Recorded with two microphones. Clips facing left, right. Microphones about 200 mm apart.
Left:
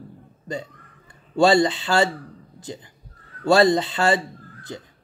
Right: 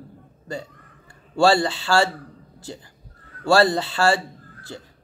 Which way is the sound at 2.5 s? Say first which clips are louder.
Left 1 dB; 20° left (ahead or behind).